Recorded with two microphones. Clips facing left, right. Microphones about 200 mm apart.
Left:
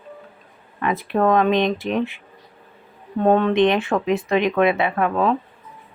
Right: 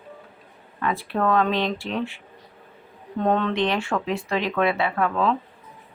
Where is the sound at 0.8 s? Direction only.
20° left (ahead or behind).